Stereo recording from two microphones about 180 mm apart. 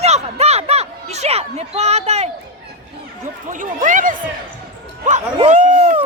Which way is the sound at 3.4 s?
45° right (ahead or behind).